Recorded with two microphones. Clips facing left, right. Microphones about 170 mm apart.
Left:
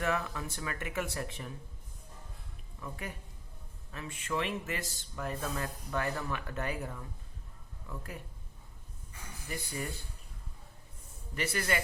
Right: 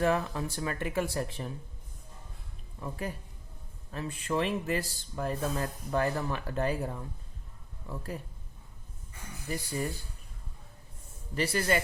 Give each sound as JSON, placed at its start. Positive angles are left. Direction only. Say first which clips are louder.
{"t": 0.0, "sound": "speech", "louder": "right 5 dB", "side_deg": -30}
{"t": 2.8, "sound": "speech", "louder": "right 6 dB", "side_deg": -35}
{"t": 9.5, "sound": "speech", "louder": "right 5 dB", "side_deg": -35}
{"t": 11.3, "sound": "speech", "louder": "right 5 dB", "side_deg": -35}